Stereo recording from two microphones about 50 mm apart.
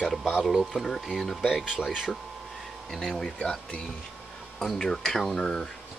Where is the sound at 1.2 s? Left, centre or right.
Centre.